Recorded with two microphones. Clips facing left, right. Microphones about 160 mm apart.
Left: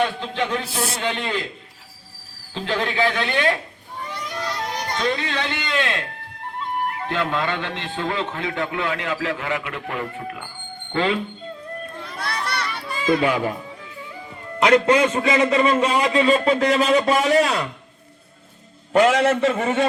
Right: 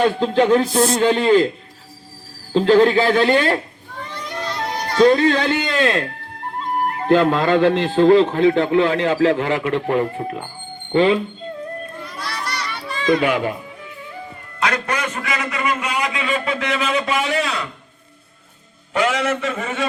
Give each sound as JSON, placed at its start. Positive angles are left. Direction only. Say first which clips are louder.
{"t": 0.0, "sound": "speech", "louder": "right 7 dB", "side_deg": -40}
{"t": 2.5, "sound": "speech", "louder": "right 12 dB", "side_deg": -40}
{"t": 4.9, "sound": "speech", "louder": "right 12 dB", "side_deg": -45}
{"t": 10.9, "sound": "speech", "louder": "right 7 dB", "side_deg": -20}
{"t": 12.2, "sound": "children playing", "louder": "left 1 dB", "side_deg": 55}
{"t": 12.6, "sound": "children playing", "louder": "right 4 dB", "side_deg": 5}
{"t": 14.6, "sound": "a man's voice", "louder": "left 7 dB", "side_deg": 25}
{"t": 18.9, "sound": "a man's voice", "louder": "left 4 dB", "side_deg": 45}